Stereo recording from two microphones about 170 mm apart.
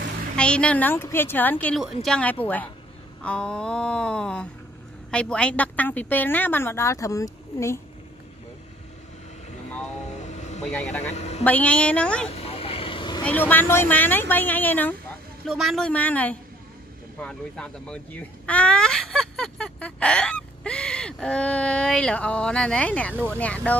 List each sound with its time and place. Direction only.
0.4 s a woman's voice: 5° left (ahead or behind)
10.0 s vehicle: 40° left (ahead or behind)
10.7 s speech: 5° left (ahead or behind)
11.1 s a sound: 40° left (ahead or behind)
11.4 s a woman's voice: 10° left (ahead or behind)
12.3 s vehicle: 35° left (ahead or behind)
13.2 s a woman's voice: 10° left (ahead or behind)
15.4 s a woman's voice: centre (ahead or behind)